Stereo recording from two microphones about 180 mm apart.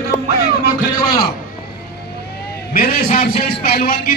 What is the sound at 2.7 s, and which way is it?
A man's voice, 50° left (ahead or behind).